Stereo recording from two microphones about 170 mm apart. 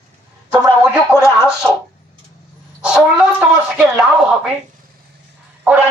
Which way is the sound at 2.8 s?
5° right (ahead or behind).